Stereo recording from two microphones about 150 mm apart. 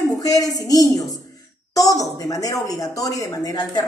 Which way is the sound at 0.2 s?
25° left (ahead or behind).